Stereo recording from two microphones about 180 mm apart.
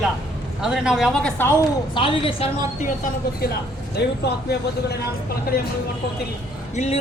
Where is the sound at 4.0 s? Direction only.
70° left (ahead or behind).